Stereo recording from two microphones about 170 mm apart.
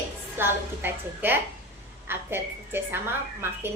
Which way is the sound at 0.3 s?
15° right (ahead or behind).